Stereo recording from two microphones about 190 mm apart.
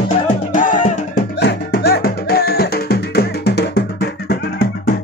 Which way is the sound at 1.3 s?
60° left (ahead or behind).